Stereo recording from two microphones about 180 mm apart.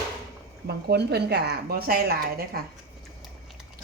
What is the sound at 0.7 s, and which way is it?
A woman's voice, 65° right (ahead or behind).